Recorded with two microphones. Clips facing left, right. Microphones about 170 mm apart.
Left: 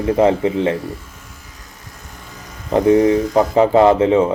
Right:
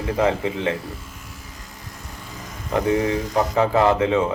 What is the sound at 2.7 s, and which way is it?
Speech, 20° left (ahead or behind).